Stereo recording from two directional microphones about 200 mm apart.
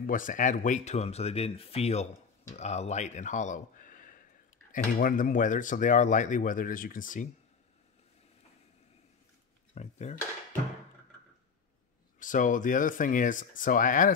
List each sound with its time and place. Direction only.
0.0 s speech: 40° left (ahead or behind)
9.8 s speech: 35° left (ahead or behind)
12.2 s speech: 40° left (ahead or behind)